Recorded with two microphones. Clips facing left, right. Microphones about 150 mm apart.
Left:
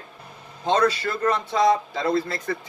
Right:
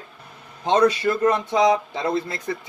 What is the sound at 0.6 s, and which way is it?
Speech, 20° right (ahead or behind).